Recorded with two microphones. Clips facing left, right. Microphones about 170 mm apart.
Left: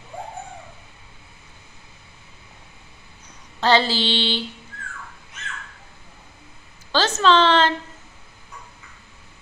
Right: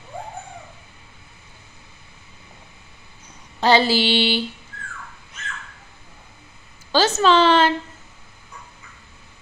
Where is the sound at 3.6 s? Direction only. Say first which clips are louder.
Right 2 dB; 10° right (ahead or behind).